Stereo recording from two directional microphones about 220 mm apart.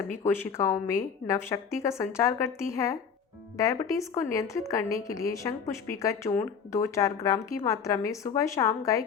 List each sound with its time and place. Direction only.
0.2 s a woman's voice: 10° left (ahead or behind)